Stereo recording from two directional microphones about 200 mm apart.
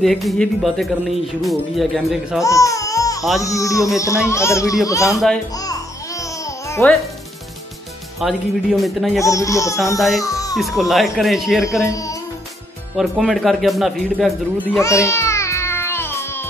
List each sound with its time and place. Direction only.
0.0 s speech: centre (ahead or behind)
2.4 s baby cry: 15° left (ahead or behind)
3.4 s speech: 15° left (ahead or behind)
5.6 s babbling: 15° left (ahead or behind)
8.2 s speech: centre (ahead or behind)
9.2 s speech: 15° left (ahead or behind)
9.9 s speech: centre (ahead or behind)
10.2 s speech: 15° left (ahead or behind)
10.8 s speech: centre (ahead or behind)
11.8 s speech: 15° left (ahead or behind)
12.9 s speech: centre (ahead or behind)
14.8 s music: 15° left (ahead or behind)